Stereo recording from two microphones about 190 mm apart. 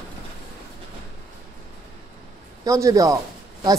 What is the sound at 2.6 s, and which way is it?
Speech, 15° right (ahead or behind).